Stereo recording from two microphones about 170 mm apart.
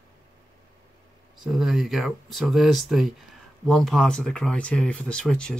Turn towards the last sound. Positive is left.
turn(degrees=5)  # may be behind; listen again after turning